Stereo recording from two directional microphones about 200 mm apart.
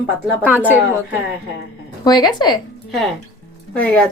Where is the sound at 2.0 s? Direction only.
20° left (ahead or behind).